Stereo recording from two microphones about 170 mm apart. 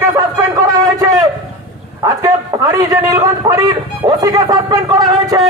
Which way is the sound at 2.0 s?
20° right (ahead or behind).